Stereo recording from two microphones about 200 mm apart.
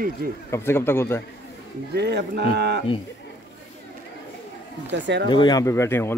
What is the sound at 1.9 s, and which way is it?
Speech, 55° right (ahead or behind).